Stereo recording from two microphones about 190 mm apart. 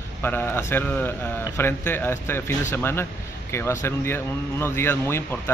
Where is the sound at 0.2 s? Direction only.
10° left (ahead or behind).